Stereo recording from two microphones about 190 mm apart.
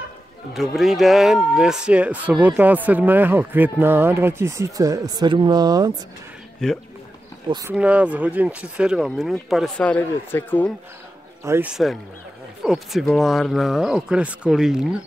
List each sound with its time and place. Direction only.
0.5 s speech: centre (ahead or behind); by 5.9 s 20° right (ahead or behind)
6.6 s speech: 5° left (ahead or behind)
7.4 s speech: 20° right (ahead or behind)
7.7 s speech: 5° right (ahead or behind); by 10.7 s 10° left (ahead or behind)
11.4 s speech: 15° right (ahead or behind)
11.7 s speech: centre (ahead or behind)